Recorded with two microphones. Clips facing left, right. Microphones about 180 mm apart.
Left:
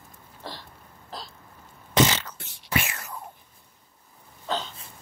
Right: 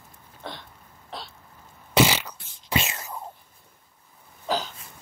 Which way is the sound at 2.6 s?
20° right (ahead or behind).